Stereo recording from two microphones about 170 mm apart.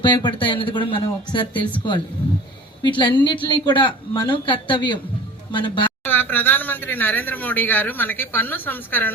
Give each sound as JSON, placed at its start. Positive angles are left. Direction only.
{"t": 0.0, "sound": "speech", "side_deg": 25}
{"t": 2.8, "sound": "speech", "side_deg": 25}
{"t": 6.1, "sound": "speech", "side_deg": 10}